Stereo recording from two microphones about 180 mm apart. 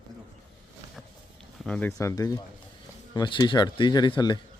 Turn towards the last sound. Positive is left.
turn(degrees=25)  # may be behind; listen again after turning